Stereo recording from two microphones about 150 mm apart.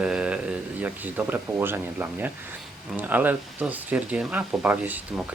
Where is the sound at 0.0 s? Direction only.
5° right (ahead or behind).